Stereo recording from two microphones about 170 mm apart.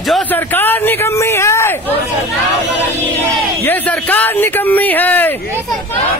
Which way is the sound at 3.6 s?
10° left (ahead or behind).